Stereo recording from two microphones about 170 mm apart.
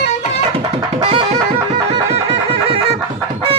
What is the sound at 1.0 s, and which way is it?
Music, 30° right (ahead or behind).